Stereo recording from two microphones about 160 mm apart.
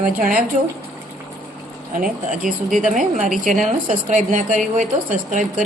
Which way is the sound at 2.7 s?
50° right (ahead or behind).